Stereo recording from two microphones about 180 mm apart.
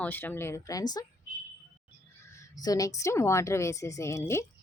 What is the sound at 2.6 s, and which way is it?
A woman's voice, 20° left (ahead or behind).